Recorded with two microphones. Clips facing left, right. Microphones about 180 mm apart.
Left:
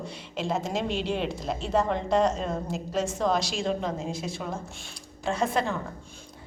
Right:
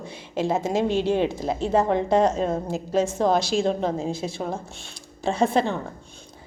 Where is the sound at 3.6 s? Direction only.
30° right (ahead or behind).